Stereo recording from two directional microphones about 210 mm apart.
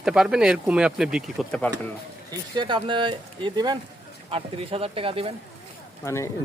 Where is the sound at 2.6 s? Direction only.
20° right (ahead or behind).